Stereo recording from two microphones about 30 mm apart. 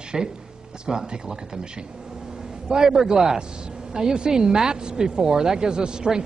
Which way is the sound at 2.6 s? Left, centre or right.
Right.